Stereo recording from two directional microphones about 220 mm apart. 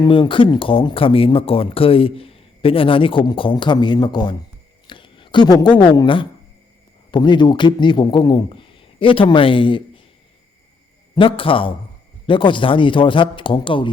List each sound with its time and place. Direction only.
0.0 s speech: 20° left (ahead or behind)
11.1 s speech: 25° left (ahead or behind)